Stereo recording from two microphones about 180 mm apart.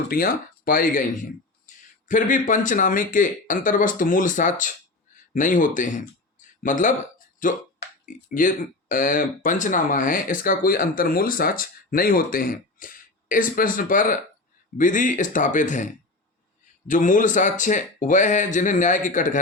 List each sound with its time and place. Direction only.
0.1 s speech: 55° left (ahead or behind)